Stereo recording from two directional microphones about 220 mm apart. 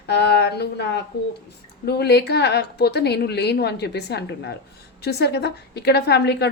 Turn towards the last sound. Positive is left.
turn(degrees=50)  # may be behind; listen again after turning